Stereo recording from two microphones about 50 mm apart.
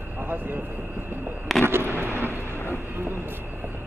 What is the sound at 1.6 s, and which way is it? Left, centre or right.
Vehicle, right.